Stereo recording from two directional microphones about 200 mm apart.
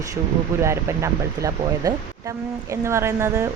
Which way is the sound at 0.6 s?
15° right (ahead or behind).